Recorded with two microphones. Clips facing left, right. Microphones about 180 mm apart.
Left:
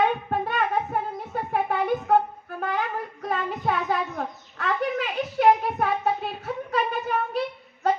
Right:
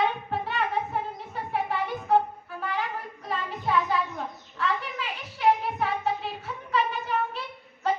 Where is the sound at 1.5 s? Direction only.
55° left (ahead or behind).